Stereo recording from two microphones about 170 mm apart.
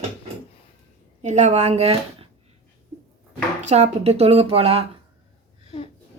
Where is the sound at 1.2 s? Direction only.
45° right (ahead or behind).